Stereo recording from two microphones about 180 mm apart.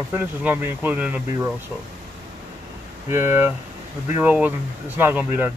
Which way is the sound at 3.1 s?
15° right (ahead or behind).